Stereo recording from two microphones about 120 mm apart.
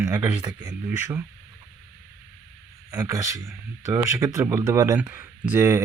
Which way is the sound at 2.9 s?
30° right (ahead or behind).